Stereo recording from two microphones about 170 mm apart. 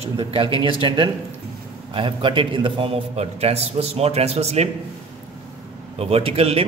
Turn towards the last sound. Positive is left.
turn(degrees=-35)  # may be behind; listen again after turning